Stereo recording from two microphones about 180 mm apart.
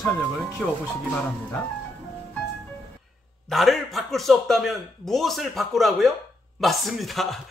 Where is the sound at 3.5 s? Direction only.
Centre (ahead or behind).